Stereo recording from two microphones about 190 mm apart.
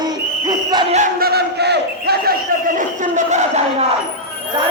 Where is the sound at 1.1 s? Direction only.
55° right (ahead or behind).